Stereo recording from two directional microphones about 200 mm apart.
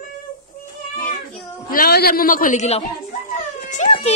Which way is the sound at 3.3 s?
35° left (ahead or behind).